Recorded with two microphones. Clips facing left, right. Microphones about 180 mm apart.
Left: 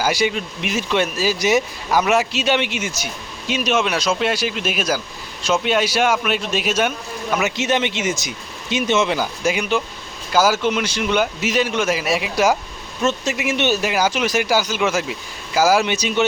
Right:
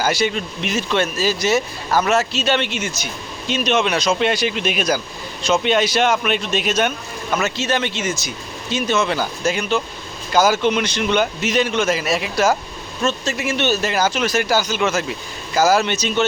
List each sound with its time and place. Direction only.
0.0 s speech: 10° left (ahead or behind)